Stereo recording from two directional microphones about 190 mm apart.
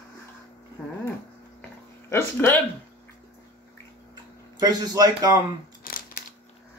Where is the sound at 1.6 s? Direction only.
15° left (ahead or behind).